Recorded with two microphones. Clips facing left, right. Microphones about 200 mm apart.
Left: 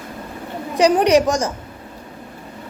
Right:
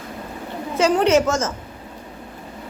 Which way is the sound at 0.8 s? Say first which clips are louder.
Left 2 dB; 15° left (ahead or behind).